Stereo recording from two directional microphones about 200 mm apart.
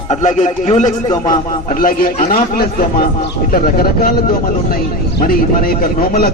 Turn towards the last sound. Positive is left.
turn(degrees=45)  # may be behind; listen again after turning